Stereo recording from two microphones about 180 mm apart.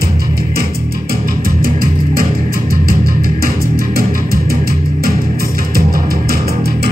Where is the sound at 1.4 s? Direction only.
55° right (ahead or behind).